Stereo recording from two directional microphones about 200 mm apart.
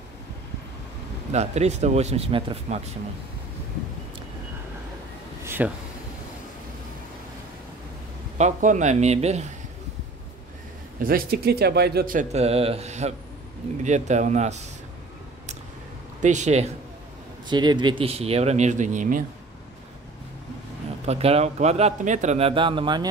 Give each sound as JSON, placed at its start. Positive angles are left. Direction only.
{"t": 1.3, "sound": "speech", "side_deg": -35}
{"t": 5.4, "sound": "a sound", "side_deg": -10}
{"t": 8.4, "sound": "speech", "side_deg": -35}
{"t": 11.1, "sound": "speech", "side_deg": -50}
{"t": 16.2, "sound": "speech", "side_deg": -35}
{"t": 17.5, "sound": "speech", "side_deg": -20}
{"t": 21.0, "sound": "speech", "side_deg": -30}